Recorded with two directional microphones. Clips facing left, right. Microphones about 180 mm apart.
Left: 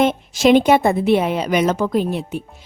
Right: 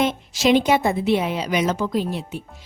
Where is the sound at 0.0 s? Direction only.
55° left (ahead or behind).